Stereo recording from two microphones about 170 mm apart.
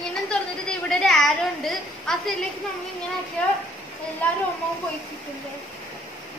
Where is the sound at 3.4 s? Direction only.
5° left (ahead or behind).